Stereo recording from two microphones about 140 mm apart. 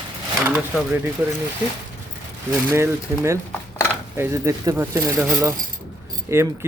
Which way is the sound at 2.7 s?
20° right (ahead or behind).